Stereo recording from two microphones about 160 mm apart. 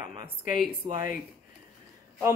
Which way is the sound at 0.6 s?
60° left (ahead or behind).